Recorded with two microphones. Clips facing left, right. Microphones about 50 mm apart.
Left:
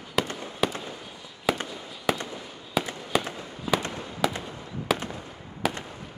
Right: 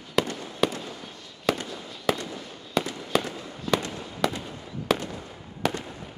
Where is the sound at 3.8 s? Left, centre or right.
Left.